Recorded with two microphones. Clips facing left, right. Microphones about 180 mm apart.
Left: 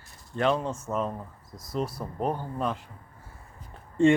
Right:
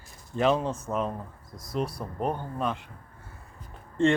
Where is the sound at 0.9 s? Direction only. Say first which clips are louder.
Left 1 dB; 15° right (ahead or behind).